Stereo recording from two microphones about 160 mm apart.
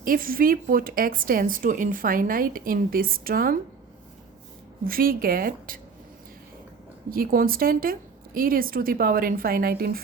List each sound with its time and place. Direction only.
0.0 s a woman's voice: 65° right (ahead or behind)
4.8 s a woman's voice: 65° right (ahead or behind)
7.1 s a woman's voice: 65° right (ahead or behind)